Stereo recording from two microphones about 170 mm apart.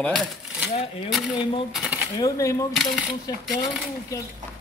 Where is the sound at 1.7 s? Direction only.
5° right (ahead or behind).